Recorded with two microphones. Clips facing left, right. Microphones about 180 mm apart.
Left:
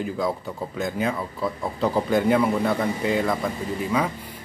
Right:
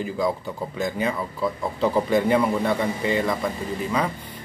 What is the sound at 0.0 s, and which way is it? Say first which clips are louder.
Speech: right 1 dB; centre (ahead or behind).